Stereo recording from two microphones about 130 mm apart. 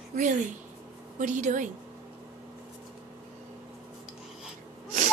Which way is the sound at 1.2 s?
75° right (ahead or behind).